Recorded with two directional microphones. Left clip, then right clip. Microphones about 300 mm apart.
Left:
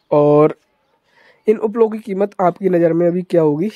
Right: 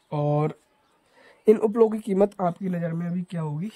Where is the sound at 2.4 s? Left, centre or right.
Centre.